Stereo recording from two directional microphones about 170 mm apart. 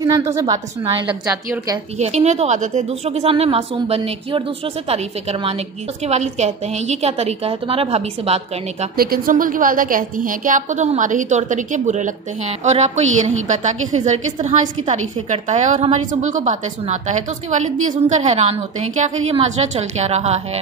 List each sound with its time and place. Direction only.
0.0 s a woman's voice: 20° right (ahead or behind)
2.0 s a woman's voice: 40° right (ahead or behind)
8.9 s a woman's voice: 60° right (ahead or behind); by 20.4 s 40° right (ahead or behind)